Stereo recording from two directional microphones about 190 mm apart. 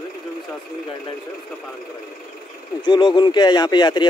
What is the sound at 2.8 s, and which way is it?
Speech, 25° left (ahead or behind).